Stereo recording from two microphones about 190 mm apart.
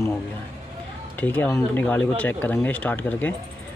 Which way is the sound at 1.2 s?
10° left (ahead or behind).